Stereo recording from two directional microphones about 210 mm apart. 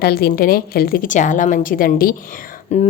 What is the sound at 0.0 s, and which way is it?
Speech, 45° left (ahead or behind).